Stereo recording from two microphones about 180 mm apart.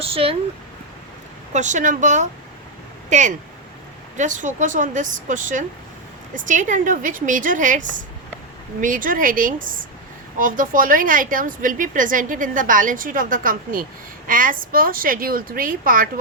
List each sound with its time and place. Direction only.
0.0 s speech: 30° right (ahead or behind)
1.5 s a woman's voice: 45° right (ahead or behind)